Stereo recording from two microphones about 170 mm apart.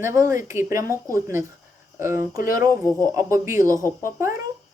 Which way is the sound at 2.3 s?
55° left (ahead or behind).